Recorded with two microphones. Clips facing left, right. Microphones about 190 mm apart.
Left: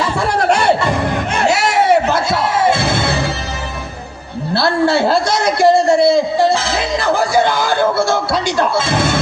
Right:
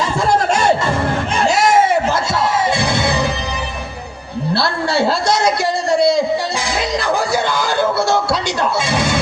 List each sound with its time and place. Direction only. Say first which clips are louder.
0.2 s music: even; 65° left (ahead or behind)
0.9 s music: left 1 dB; 15° left (ahead or behind)
1.4 s music: right 2 dB; 65° left (ahead or behind)
2.7 s music: even; 15° right (ahead or behind)
4.5 s a man's voice: left 5 dB; 55° left (ahead or behind)